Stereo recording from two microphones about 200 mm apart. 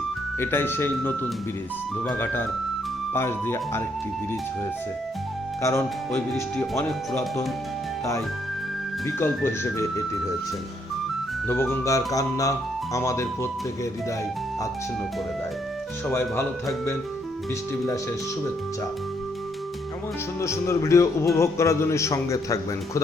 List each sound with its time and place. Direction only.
0.3 s a man's voice: 10° left (ahead or behind)
5.6 s a man's voice: 10° left (ahead or behind)
9.0 s a man's voice: 10° left (ahead or behind)
11.4 s a man's voice: 10° left (ahead or behind)
16.0 s a man's voice: 10° left (ahead or behind)
20.4 s a man's voice: 15° left (ahead or behind)